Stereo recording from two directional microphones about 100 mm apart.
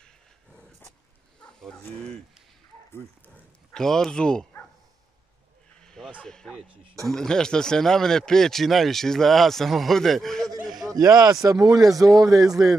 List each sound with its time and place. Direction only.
1.4 s livestock: 10° left (ahead or behind)
2.0 s speech: 10° left (ahead or behind)
3.7 s speech: 5° left (ahead or behind)
6.1 s speech: 5° left (ahead or behind)
10.7 s a sound: centre (ahead or behind)
11.0 s speech: 35° right (ahead or behind)